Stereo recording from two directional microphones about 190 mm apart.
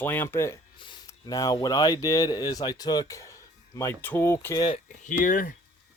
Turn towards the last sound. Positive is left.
turn(degrees=45)  # may be behind; listen again after turning